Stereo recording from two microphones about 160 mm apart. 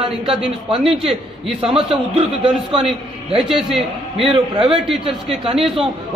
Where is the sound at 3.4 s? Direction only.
Centre (ahead or behind).